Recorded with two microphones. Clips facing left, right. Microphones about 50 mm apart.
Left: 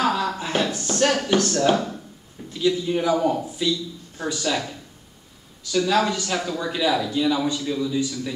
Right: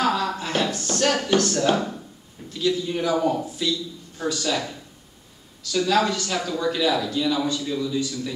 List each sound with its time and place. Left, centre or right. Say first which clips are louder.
0.0 s a sound: even; centre
1.2 s a man's voice: left 1 dB; centre
6.0 s a man's voice: even; centre
6.3 s a man's voice: right 1 dB; centre